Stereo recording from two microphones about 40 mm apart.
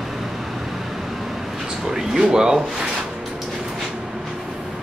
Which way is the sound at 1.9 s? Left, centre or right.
Centre.